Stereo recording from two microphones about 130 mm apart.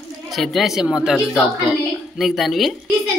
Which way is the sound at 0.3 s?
Centre (ahead or behind).